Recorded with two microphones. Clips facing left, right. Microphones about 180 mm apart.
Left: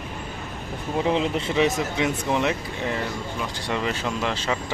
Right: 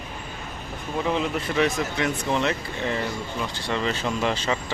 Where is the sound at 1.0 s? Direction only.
25° left (ahead or behind).